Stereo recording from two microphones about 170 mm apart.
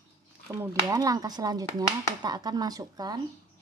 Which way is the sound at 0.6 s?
20° right (ahead or behind).